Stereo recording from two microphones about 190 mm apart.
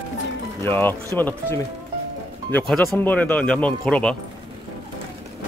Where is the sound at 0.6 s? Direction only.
10° left (ahead or behind).